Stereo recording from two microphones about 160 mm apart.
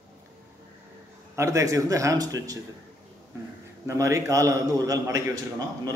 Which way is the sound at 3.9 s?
20° right (ahead or behind).